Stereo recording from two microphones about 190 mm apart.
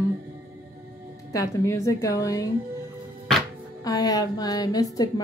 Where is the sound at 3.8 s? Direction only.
20° left (ahead or behind).